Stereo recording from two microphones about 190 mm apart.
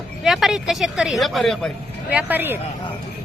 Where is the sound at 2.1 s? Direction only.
10° right (ahead or behind).